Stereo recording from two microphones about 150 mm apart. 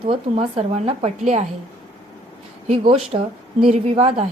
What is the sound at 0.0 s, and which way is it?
A woman's voice, 35° right (ahead or behind).